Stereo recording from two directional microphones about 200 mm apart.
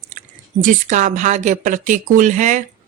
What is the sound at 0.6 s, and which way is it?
A woman's voice, 40° right (ahead or behind).